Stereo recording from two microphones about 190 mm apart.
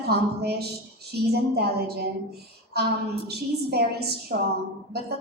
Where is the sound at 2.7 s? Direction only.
60° right (ahead or behind).